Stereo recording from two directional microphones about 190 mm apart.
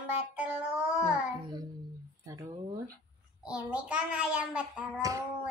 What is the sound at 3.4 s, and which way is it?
A child's voice, 5° right (ahead or behind).